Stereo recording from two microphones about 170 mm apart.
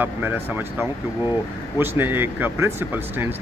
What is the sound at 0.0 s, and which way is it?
Speech, 10° right (ahead or behind).